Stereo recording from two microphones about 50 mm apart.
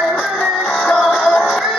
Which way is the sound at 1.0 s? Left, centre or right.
Centre.